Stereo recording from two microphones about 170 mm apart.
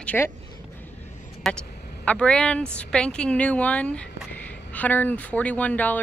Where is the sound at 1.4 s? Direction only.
5° left (ahead or behind).